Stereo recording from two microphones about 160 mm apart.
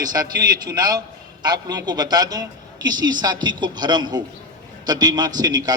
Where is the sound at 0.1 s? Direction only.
25° right (ahead or behind).